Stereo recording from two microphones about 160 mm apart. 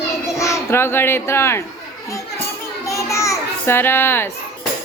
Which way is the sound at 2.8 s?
20° left (ahead or behind).